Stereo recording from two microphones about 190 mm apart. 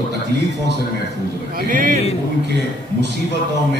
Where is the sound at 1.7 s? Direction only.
45° right (ahead or behind).